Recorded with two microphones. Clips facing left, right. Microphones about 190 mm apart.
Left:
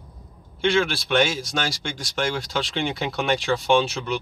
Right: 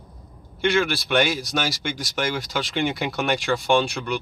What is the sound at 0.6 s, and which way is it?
Speech, centre (ahead or behind).